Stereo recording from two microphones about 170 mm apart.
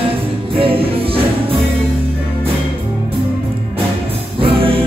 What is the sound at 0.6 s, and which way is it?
Music, 35° right (ahead or behind).